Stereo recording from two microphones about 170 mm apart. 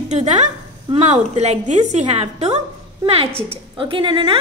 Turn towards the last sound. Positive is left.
turn(degrees=-30)  # may be behind; listen again after turning